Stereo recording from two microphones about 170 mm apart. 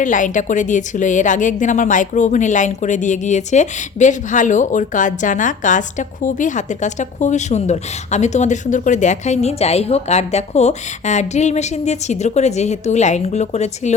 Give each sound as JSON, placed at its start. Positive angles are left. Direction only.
{"t": 0.0, "sound": "a woman's voice", "side_deg": 50}